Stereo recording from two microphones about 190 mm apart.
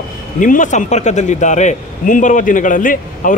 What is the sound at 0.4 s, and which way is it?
A man's voice, 40° left (ahead or behind).